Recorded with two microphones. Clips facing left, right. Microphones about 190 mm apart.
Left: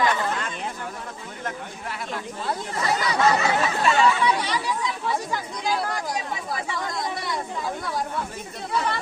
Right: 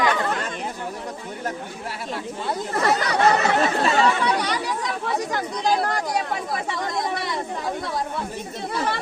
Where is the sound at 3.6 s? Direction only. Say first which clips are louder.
Right 1 dB; 40° right (ahead or behind).